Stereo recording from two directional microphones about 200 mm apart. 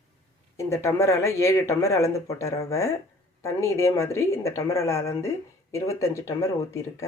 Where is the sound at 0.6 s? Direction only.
15° left (ahead or behind).